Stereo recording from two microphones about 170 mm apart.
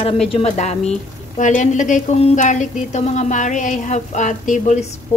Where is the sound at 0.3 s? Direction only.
40° left (ahead or behind).